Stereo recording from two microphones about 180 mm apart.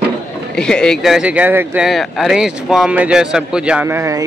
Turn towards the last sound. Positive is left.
turn(degrees=-15)  # may be behind; listen again after turning